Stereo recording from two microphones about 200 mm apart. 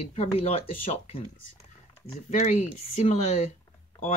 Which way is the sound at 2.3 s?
35° left (ahead or behind).